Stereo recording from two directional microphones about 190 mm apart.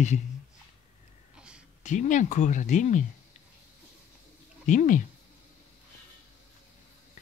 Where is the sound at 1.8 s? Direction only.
40° left (ahead or behind).